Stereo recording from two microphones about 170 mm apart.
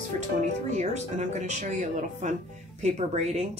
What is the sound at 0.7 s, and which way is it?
Speech, 40° right (ahead or behind).